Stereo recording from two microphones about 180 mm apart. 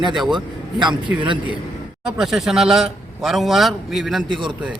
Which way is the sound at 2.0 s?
5° right (ahead or behind).